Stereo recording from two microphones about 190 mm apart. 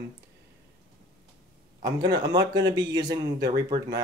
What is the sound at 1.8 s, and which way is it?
Speech, 20° right (ahead or behind).